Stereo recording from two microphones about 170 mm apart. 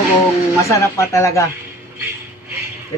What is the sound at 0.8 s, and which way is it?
Speech, 20° left (ahead or behind).